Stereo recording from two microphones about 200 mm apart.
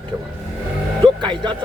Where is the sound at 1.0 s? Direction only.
25° right (ahead or behind).